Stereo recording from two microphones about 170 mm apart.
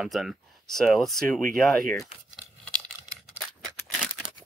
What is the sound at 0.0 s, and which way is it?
Speech, centre (ahead or behind).